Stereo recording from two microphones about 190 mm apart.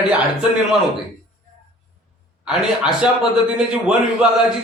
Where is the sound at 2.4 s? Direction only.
5° right (ahead or behind).